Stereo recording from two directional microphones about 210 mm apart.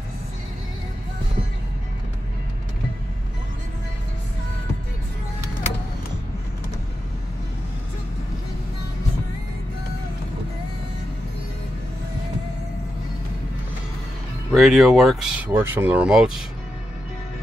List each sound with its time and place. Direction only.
14.5 s speech: centre (ahead or behind)